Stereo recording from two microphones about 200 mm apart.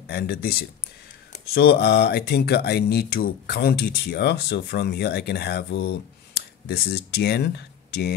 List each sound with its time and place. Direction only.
0.1 s speech: 50° left (ahead or behind)